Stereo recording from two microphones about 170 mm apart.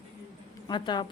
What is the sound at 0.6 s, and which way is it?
Speech, 25° left (ahead or behind).